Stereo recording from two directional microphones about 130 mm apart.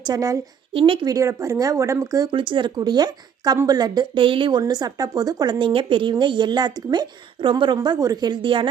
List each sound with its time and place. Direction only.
0.1 s speech: 25° right (ahead or behind)
0.7 s speech: 45° right (ahead or behind)
1.0 s speech: 25° right (ahead or behind)
2.3 s a woman's voice: 40° right (ahead or behind)
4.6 s a woman's voice: 30° right (ahead or behind)